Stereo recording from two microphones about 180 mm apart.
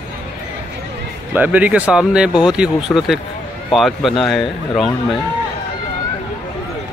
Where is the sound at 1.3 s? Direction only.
10° right (ahead or behind).